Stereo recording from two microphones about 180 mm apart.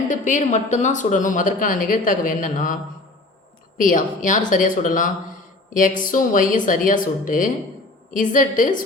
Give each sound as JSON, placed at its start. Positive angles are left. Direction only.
{"t": 0.3, "sound": "a woman's voice", "side_deg": 45}
{"t": 3.8, "sound": "a woman's voice", "side_deg": 45}